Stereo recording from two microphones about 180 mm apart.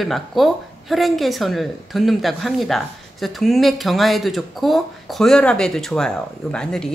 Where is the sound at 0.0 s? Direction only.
Centre (ahead or behind).